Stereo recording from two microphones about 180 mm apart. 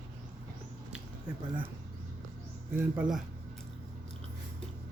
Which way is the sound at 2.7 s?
5° right (ahead or behind).